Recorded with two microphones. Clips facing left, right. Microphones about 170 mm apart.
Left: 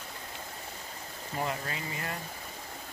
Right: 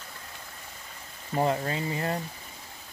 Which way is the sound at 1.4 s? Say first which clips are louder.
Right 8 dB; 30° right (ahead or behind).